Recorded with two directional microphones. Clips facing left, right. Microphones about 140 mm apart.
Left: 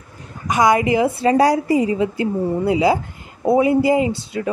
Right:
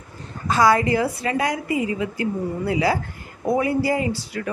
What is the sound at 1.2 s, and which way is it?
Speech, 35° left (ahead or behind).